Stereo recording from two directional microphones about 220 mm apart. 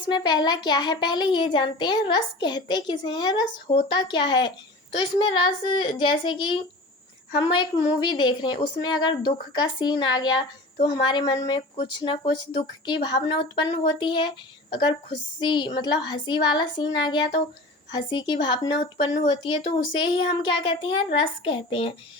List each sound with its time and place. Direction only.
0.1 s a woman's voice: 20° left (ahead or behind)
15.4 s a woman's voice: 20° left (ahead or behind)